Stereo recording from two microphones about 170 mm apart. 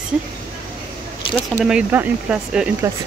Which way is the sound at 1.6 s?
10° right (ahead or behind).